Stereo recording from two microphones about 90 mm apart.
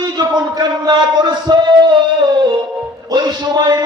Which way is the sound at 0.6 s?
50° right (ahead or behind).